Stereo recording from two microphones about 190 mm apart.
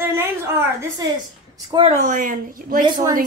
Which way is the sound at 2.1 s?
45° right (ahead or behind).